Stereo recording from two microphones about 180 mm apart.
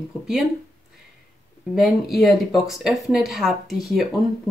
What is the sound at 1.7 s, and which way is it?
Speech, centre (ahead or behind).